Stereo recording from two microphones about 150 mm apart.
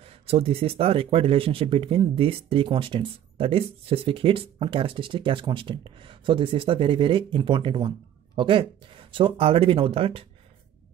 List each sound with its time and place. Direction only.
0.0 s speech: 40° right (ahead or behind)